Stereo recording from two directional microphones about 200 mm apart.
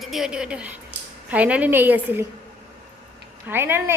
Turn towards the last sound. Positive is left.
turn(degrees=-10)  # may be behind; listen again after turning